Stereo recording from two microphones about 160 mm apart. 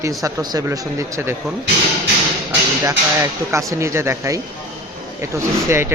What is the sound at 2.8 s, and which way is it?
Speech, 20° right (ahead or behind).